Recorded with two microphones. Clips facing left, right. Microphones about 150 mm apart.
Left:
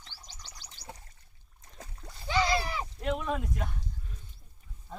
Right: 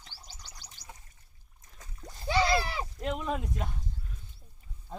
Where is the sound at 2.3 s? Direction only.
35° right (ahead or behind).